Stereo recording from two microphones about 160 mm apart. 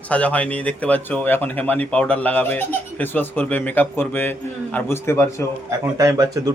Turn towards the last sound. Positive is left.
turn(degrees=-20)  # may be behind; listen again after turning